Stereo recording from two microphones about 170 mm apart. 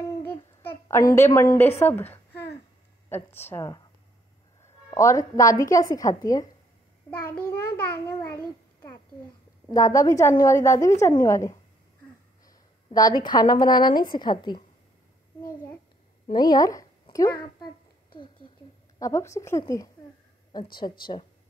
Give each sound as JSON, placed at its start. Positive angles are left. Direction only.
{"t": 0.3, "sound": "child singing", "side_deg": 15}
{"t": 1.1, "sound": "a woman's voice", "side_deg": 15}
{"t": 4.9, "sound": "a woman's voice", "side_deg": 20}
{"t": 7.2, "sound": "a child's voice", "side_deg": 60}
{"t": 9.7, "sound": "a woman's voice", "side_deg": 20}
{"t": 16.3, "sound": "a woman's voice", "side_deg": 25}
{"t": 18.9, "sound": "a woman's voice", "side_deg": 20}
{"t": 20.8, "sound": "speech", "side_deg": 35}